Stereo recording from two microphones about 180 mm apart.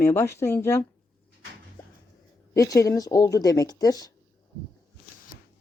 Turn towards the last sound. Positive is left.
turn(degrees=20)  # may be behind; listen again after turning